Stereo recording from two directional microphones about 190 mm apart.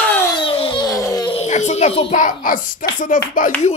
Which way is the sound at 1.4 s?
35° left (ahead or behind).